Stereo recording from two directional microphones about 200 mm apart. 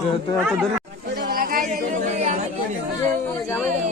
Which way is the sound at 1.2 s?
45° right (ahead or behind).